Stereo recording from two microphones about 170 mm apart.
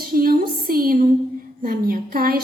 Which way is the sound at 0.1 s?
60° right (ahead or behind).